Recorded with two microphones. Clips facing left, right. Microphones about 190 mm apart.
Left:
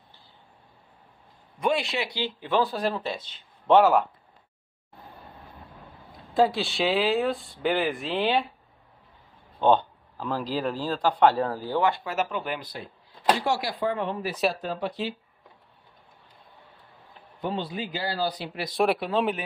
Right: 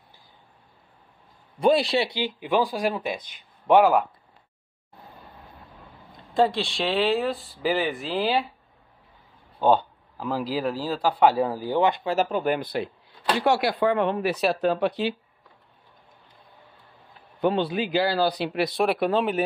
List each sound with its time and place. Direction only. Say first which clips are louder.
1.6 s speech: right 6 dB; 35° right (ahead or behind)
2.0 s speech: right 3 dB; 15° right (ahead or behind)
6.3 s speech: even; centre (ahead or behind)
9.6 s speech: right 1 dB; 10° right (ahead or behind); by 12.5 s 40° right (ahead or behind)
12.5 s speech: right 9 dB; 65° right (ahead or behind)
17.4 s speech: right 7 dB; 70° right (ahead or behind)